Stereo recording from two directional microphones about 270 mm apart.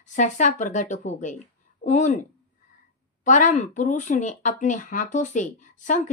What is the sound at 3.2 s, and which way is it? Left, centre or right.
A woman's voice, left.